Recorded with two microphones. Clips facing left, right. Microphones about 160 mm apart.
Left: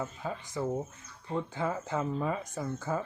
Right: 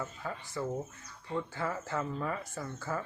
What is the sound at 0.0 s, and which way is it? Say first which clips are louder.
Speech: left 3 dB; 20° left (ahead or behind).